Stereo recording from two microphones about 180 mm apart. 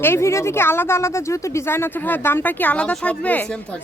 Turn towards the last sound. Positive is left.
turn(degrees=5)  # may be behind; listen again after turning